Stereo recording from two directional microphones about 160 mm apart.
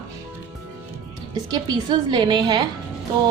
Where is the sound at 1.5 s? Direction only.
30° right (ahead or behind).